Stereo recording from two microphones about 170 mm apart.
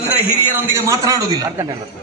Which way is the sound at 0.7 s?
15° right (ahead or behind).